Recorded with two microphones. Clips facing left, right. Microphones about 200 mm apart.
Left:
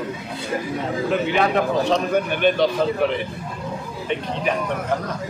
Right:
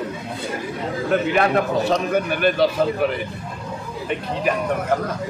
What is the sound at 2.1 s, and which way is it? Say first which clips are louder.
Speech: even; 5° right (ahead or behind).